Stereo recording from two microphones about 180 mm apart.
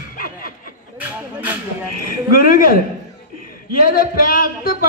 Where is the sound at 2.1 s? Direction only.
55° left (ahead or behind).